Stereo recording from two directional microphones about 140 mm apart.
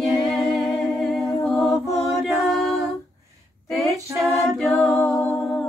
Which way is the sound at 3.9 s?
25° right (ahead or behind).